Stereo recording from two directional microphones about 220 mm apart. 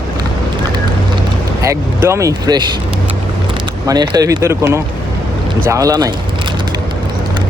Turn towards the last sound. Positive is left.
turn(degrees=-15)  # may be behind; listen again after turning